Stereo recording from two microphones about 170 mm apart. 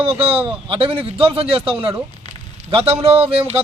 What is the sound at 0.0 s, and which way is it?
A man's voice, 35° right (ahead or behind).